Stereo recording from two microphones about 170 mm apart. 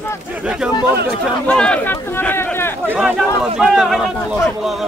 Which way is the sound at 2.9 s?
10° right (ahead or behind).